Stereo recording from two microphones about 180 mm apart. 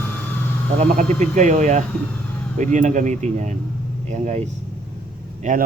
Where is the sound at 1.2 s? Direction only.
40° right (ahead or behind).